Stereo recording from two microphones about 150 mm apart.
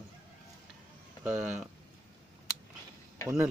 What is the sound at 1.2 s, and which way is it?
Speech, 5° right (ahead or behind).